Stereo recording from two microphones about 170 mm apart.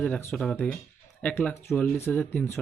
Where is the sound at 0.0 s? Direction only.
5° left (ahead or behind).